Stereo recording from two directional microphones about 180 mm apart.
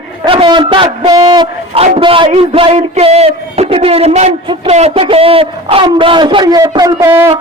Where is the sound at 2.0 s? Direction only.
30° right (ahead or behind).